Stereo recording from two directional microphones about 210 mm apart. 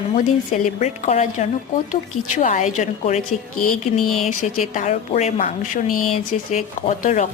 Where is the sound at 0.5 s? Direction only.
40° left (ahead or behind).